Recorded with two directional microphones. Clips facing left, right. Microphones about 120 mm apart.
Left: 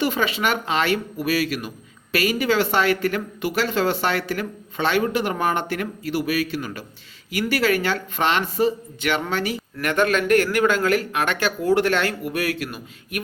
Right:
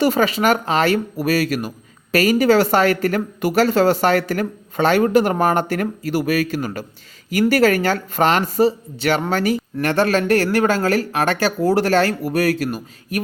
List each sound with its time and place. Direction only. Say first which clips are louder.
0.0 s speech: right 6 dB; 40° right (ahead or behind)